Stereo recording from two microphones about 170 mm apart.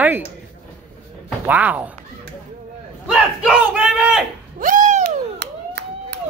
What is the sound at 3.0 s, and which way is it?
Battle cry, 5° right (ahead or behind).